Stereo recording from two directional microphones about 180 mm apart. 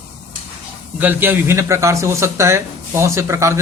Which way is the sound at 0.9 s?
10° right (ahead or behind).